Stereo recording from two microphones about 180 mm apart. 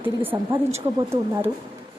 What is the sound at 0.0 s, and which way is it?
Speech, 10° right (ahead or behind).